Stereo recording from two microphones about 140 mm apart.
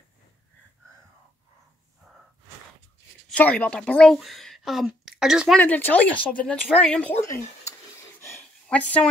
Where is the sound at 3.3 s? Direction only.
10° left (ahead or behind).